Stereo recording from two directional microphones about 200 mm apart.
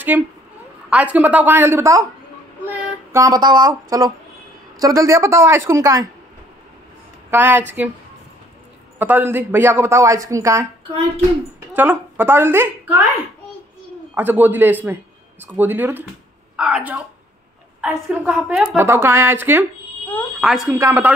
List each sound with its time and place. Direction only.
0.1 s speech: 10° right (ahead or behind)
2.6 s child singing: 15° right (ahead or behind)
4.7 s speech: 15° right (ahead or behind)
7.2 s speech: 10° right (ahead or behind)
8.9 s speech: 10° right (ahead or behind)
11.7 s a woman's voice: 10° right (ahead or behind)
14.1 s a woman's voice: 10° right (ahead or behind)